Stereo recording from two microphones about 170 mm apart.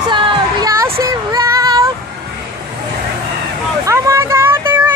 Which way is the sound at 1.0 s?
20° right (ahead or behind).